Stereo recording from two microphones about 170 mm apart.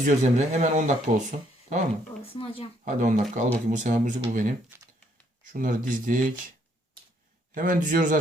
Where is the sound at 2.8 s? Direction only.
50° right (ahead or behind).